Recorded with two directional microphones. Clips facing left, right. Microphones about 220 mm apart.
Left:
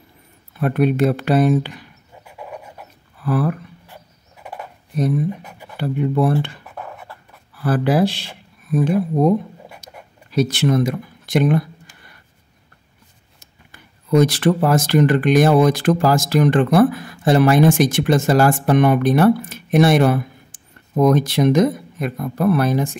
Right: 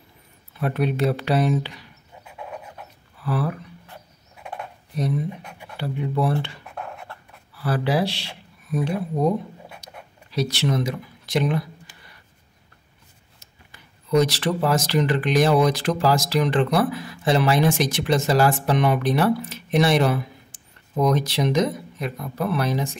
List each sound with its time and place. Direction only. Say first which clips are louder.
0.6 s speech: left 6 dB; 55° left (ahead or behind)
3.3 s speech: left 6 dB; 50° left (ahead or behind)
3.9 s music: left 1 dB; 5° left (ahead or behind)
5.4 s a sound: left 2 dB; 5° left (ahead or behind)
5.8 s speech: left 6 dB; 50° left (ahead or behind)
6.8 s beatboxing: left 1 dB; 5° left (ahead or behind)
7.6 s speech: left 6 dB; 50° left (ahead or behind)
10.3 s speech: left 6 dB; 50° left (ahead or behind)
13.4 s speech: left 4 dB; 50° left (ahead or behind)